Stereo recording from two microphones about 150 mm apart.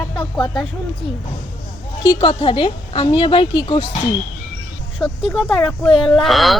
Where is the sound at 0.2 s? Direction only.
30° left (ahead or behind).